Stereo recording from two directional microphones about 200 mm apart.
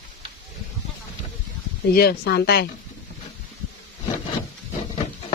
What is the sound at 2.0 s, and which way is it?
Speech, 55° left (ahead or behind).